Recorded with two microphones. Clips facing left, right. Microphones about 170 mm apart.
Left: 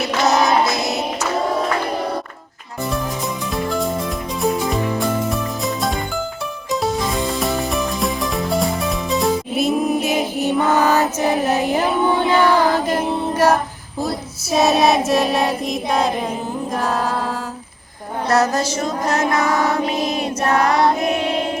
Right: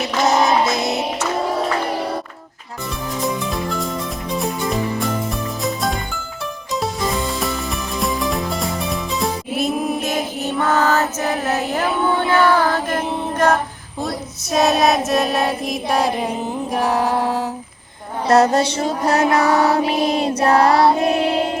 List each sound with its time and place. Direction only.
7.3 s music: centre (ahead or behind)
14.0 s female singing: centre (ahead or behind)
16.7 s music: 15° right (ahead or behind)
18.3 s music: 30° right (ahead or behind)